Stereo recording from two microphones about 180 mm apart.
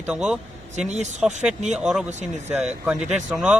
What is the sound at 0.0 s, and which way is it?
Speech, 5° right (ahead or behind).